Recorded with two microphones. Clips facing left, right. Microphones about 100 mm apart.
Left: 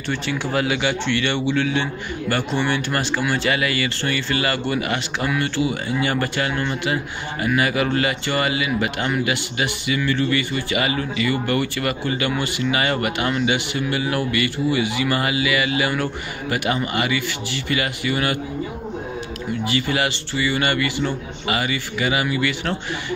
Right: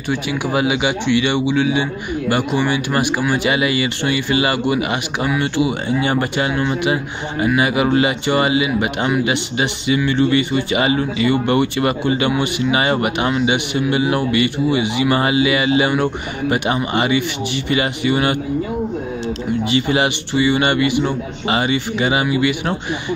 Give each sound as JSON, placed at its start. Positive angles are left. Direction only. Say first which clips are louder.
{"t": 0.1, "sound": "a man's voice", "louder": "right 4 dB", "side_deg": -15}
{"t": 19.7, "sound": "speech", "louder": "right 5 dB", "side_deg": -20}